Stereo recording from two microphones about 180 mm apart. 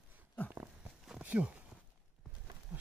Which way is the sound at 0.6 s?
5° right (ahead or behind).